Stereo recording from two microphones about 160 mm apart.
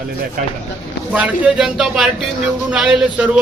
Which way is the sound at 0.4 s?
60° right (ahead or behind).